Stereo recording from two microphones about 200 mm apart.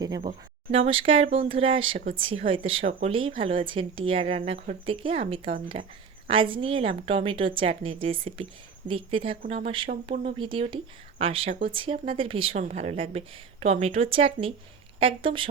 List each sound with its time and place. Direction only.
0.0 s speech: 25° right (ahead or behind)